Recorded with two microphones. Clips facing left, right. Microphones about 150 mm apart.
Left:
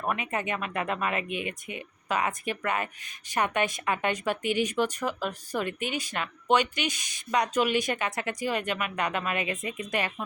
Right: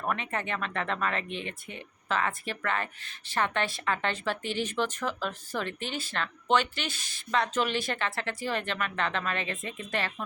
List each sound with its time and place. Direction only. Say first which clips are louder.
0.0 s speech: left 2 dB; 10° left (ahead or behind)